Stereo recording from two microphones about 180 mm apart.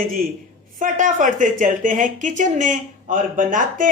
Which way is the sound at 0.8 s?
45° right (ahead or behind).